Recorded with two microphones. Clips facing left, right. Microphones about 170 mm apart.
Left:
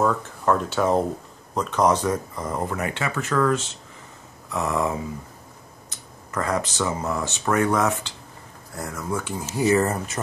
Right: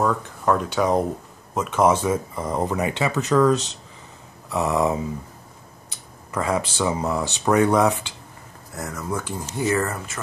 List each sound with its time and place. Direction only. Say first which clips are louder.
0.0 s speech: even; centre (ahead or behind); by 5.0 s 20° right (ahead or behind)
6.3 s speech: right 1 dB; 10° right (ahead or behind)
8.7 s speech: even; centre (ahead or behind)
9.6 s speech: left 3 dB; 20° left (ahead or behind)